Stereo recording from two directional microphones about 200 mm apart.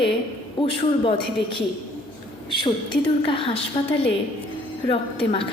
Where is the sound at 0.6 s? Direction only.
25° left (ahead or behind).